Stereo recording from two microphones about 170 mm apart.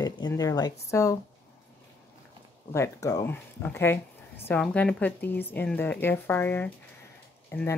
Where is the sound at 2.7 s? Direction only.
20° left (ahead or behind).